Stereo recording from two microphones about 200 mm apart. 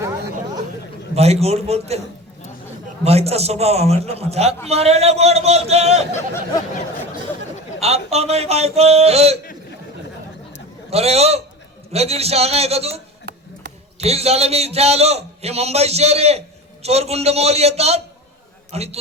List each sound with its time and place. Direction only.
1.1 s a man's voice: 30° right (ahead or behind)
3.0 s a man's voice: 30° right (ahead or behind)
7.8 s a man's voice: 30° right (ahead or behind)
10.9 s a man's voice: 30° right (ahead or behind)
13.2 s chop: 55° right (ahead or behind)
14.0 s a man's voice: 30° right (ahead or behind)